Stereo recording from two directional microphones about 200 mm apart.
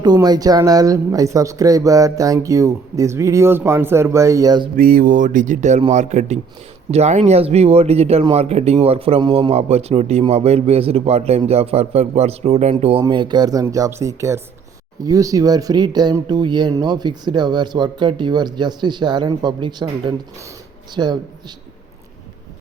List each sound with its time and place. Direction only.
0.0 s speech: 20° right (ahead or behind)
4.8 s speech: 45° right (ahead or behind); by 21.2 s 20° right (ahead or behind)